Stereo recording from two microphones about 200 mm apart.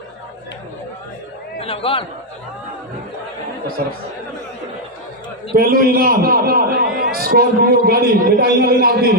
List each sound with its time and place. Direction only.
1.6 s a man's voice: 30° left (ahead or behind)
5.5 s a man's voice: 45° right (ahead or behind)